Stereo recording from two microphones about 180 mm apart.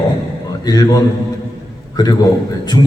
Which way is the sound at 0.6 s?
20° left (ahead or behind).